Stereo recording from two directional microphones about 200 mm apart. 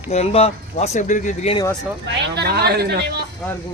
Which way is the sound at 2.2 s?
55° right (ahead or behind).